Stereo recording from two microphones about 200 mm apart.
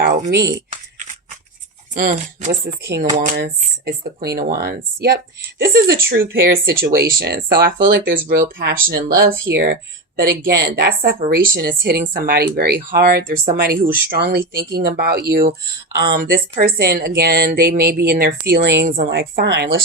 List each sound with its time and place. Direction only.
0.3 s speech: 55° right (ahead or behind)
1.9 s speech: 40° right (ahead or behind); by 19.6 s 60° right (ahead or behind)